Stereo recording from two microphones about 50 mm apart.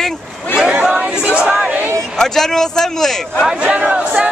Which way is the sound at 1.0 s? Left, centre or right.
Right.